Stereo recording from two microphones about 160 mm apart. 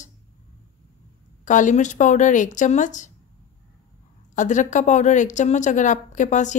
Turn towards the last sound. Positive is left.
turn(degrees=50)  # may be behind; listen again after turning